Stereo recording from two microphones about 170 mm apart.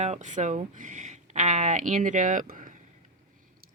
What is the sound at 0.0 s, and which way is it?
Speech, 45° right (ahead or behind).